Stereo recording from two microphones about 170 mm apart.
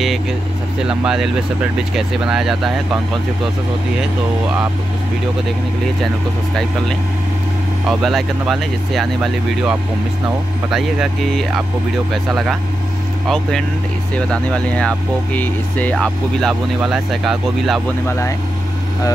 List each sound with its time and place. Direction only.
0.8 s speech: 5° right (ahead or behind)
7.9 s speech: centre (ahead or behind)
18.0 s speech: 15° left (ahead or behind)